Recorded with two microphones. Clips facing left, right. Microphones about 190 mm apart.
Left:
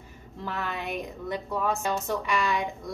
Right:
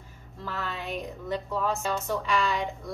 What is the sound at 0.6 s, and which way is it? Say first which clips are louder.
A woman's voice: left 1 dB; 15° left (ahead or behind).